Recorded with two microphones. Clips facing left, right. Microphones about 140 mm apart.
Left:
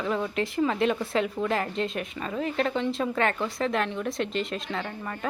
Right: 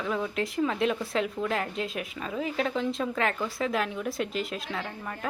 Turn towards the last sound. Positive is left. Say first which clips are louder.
# left 2 dB
turn(degrees=0)  # may be behind; listen again after turning